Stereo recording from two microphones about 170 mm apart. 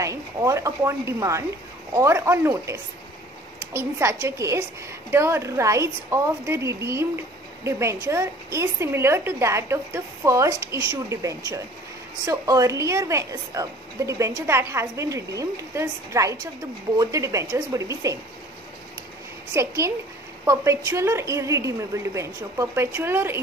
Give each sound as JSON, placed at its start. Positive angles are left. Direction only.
{"t": 0.0, "sound": "a woman's voice", "side_deg": -20}
{"t": 19.5, "sound": "a woman's voice", "side_deg": -15}